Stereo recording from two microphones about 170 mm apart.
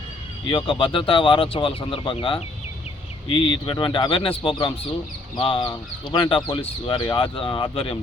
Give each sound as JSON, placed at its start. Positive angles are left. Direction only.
{"t": 0.4, "sound": "speech", "side_deg": 30}